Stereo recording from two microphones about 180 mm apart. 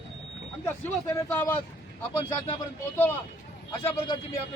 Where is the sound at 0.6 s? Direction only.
15° left (ahead or behind).